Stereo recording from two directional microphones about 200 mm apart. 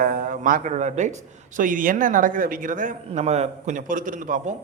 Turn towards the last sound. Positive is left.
turn(degrees=-40)  # may be behind; listen again after turning